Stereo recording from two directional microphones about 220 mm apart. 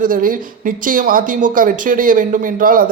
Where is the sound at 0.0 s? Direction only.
40° right (ahead or behind).